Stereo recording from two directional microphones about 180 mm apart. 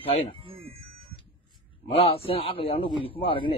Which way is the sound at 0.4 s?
30° right (ahead or behind).